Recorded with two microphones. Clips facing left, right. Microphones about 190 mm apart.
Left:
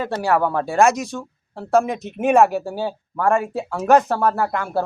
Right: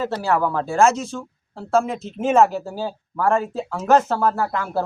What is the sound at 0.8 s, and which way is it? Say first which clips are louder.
Speech: left 1 dB; 15° left (ahead or behind).